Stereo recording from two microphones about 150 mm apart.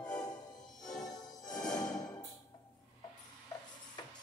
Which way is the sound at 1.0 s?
25° left (ahead or behind).